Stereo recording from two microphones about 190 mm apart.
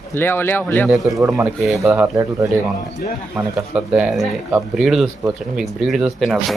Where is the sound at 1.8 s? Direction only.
15° right (ahead or behind).